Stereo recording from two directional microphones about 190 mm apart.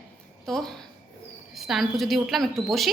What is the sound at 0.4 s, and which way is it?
A woman's voice, centre (ahead or behind).